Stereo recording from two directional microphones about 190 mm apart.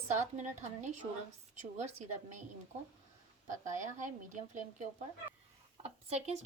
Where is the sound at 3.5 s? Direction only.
40° right (ahead or behind).